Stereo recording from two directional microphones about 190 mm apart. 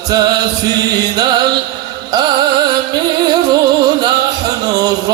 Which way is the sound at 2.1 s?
20° right (ahead or behind).